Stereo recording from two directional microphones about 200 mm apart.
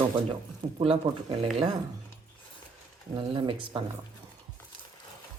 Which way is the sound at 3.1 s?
25° right (ahead or behind).